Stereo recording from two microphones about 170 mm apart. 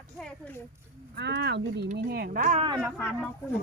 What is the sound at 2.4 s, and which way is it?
Speech, 45° right (ahead or behind).